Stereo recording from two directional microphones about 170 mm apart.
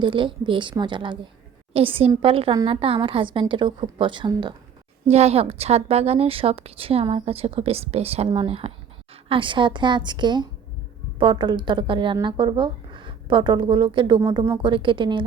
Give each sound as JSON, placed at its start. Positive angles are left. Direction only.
{"t": 0.0, "sound": "a woman's voice", "side_deg": -30}
{"t": 5.0, "sound": "a woman's voice", "side_deg": -40}
{"t": 14.2, "sound": "speech", "side_deg": -20}